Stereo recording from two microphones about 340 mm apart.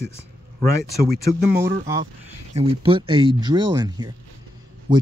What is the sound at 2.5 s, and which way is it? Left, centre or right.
Speech, centre.